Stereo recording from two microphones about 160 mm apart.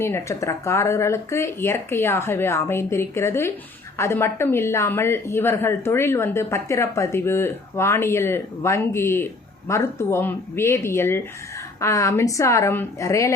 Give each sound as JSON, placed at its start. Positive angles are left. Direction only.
{"t": 0.0, "sound": "a woman's voice", "side_deg": 15}